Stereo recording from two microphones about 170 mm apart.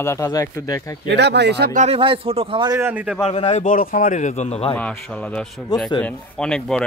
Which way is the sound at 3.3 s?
35° left (ahead or behind).